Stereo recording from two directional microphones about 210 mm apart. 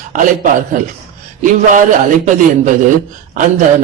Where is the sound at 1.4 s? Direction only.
40° right (ahead or behind).